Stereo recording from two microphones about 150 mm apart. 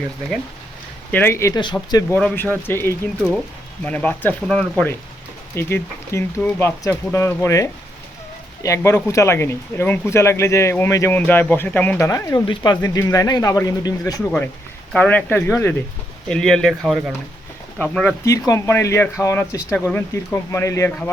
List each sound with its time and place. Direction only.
1.1 s speech: 15° left (ahead or behind)
1.5 s speech: 30° left (ahead or behind)
2.1 s speech: 10° left (ahead or behind)
14.9 s speech: 10° left (ahead or behind)
16.3 s speech: 5° left (ahead or behind)
18.3 s speech: 20° left (ahead or behind)